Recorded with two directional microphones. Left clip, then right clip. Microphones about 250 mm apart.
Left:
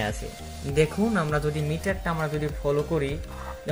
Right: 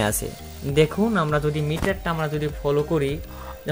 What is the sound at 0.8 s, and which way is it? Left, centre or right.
Speech, centre.